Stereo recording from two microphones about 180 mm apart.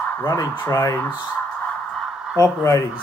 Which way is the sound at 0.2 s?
15° left (ahead or behind).